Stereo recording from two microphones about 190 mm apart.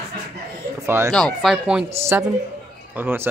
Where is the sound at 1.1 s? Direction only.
Centre (ahead or behind).